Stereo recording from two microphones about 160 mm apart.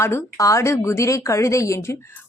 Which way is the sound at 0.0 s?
20° left (ahead or behind).